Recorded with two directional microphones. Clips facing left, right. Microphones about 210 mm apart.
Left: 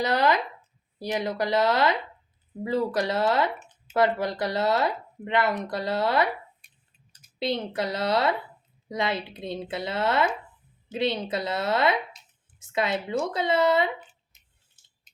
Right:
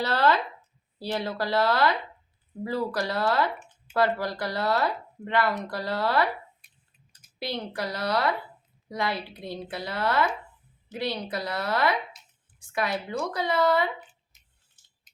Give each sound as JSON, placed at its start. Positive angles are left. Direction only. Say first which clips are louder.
{"t": 0.0, "sound": "speech", "louder": "left 1 dB", "side_deg": 15}
{"t": 7.3, "sound": "speech", "louder": "left 4 dB", "side_deg": 20}